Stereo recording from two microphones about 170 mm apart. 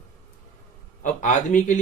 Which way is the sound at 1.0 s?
50° left (ahead or behind).